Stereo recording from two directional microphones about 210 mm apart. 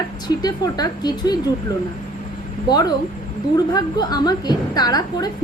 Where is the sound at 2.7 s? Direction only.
20° left (ahead or behind).